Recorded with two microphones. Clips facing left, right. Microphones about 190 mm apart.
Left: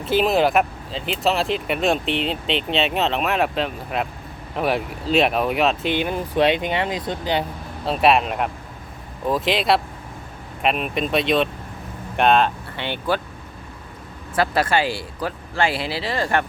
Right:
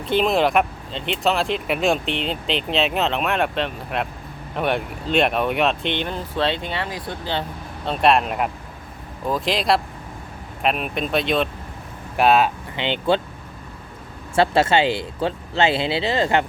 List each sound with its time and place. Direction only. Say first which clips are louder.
0.0 s speech: left 1 dB; 5° left (ahead or behind)
7.9 s speech: even; 5° left (ahead or behind)
12.7 s speech: right 3 dB; 20° right (ahead or behind)
14.3 s speech: right 3 dB; 25° right (ahead or behind)